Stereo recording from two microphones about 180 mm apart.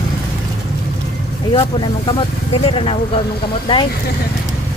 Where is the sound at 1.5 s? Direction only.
30° left (ahead or behind).